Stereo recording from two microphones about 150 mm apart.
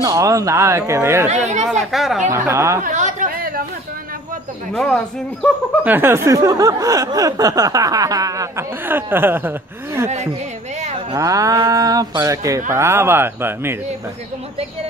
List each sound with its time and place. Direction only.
0.0 s speech: 20° right (ahead or behind)
1.7 s speech: centre (ahead or behind)
2.3 s speech: 20° right (ahead or behind)
2.8 s chatter: 55° right (ahead or behind); by 3.6 s 75° right (ahead or behind)
4.7 s speech: 5° left (ahead or behind)
5.9 s speech: 15° right (ahead or behind)
10.8 s a sound: 50° right (ahead or behind)
11.1 s speech: 20° right (ahead or behind)